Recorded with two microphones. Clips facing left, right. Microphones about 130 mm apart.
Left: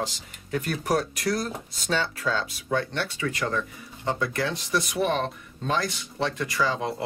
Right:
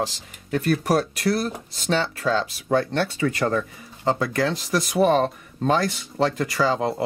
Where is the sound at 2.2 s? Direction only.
40° right (ahead or behind).